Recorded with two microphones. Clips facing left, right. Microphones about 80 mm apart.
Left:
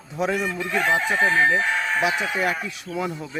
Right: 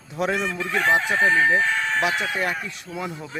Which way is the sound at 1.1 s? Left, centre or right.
Left.